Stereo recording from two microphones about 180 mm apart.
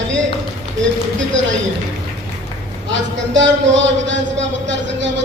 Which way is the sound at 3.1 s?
90° right.